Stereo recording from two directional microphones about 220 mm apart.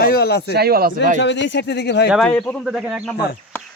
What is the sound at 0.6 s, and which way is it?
Speech, 45° right (ahead or behind).